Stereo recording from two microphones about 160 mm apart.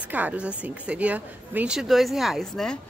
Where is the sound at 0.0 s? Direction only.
10° right (ahead or behind).